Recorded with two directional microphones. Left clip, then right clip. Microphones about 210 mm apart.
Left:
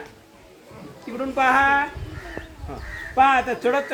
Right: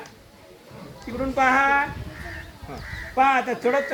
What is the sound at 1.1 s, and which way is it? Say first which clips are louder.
Speech: left 1 dB; 5° left (ahead or behind).